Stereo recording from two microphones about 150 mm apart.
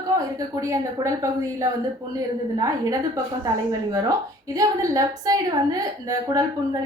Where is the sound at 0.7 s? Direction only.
20° right (ahead or behind).